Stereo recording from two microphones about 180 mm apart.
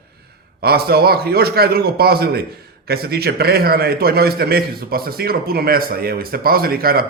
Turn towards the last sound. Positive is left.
turn(degrees=-55)  # may be behind; listen again after turning